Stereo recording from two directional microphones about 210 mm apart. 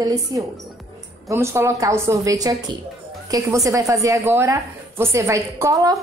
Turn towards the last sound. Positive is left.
turn(degrees=-15)  # may be behind; listen again after turning